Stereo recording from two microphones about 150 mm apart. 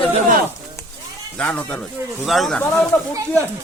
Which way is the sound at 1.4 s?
10° left (ahead or behind).